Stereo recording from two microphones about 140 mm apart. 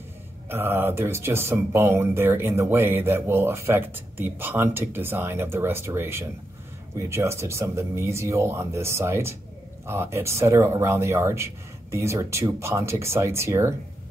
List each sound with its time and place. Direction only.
0.5 s speech: 15° right (ahead or behind)